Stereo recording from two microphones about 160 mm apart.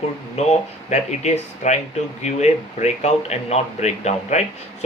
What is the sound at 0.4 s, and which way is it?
Speech, 40° left (ahead or behind).